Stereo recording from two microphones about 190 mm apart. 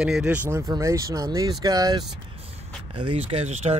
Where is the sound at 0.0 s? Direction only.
5° right (ahead or behind).